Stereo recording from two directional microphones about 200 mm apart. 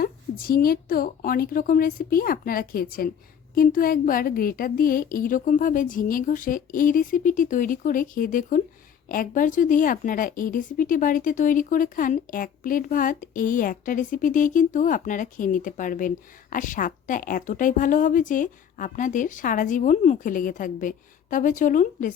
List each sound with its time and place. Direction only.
0.0 s a woman's voice: 45° left (ahead or behind)